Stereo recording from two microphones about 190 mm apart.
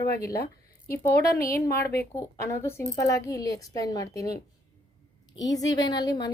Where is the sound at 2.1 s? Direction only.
15° left (ahead or behind).